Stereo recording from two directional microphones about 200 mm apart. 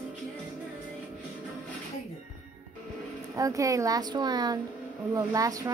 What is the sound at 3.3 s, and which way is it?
Speech, 15° right (ahead or behind).